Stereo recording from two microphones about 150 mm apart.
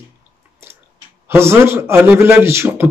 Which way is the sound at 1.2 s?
15° right (ahead or behind).